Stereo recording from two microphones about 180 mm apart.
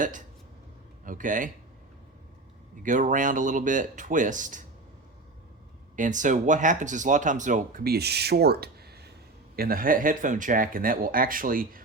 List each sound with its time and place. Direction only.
1.0 s speech: 45° right (ahead or behind)
2.8 s speech: 45° right (ahead or behind)
6.0 s speech: 45° right (ahead or behind)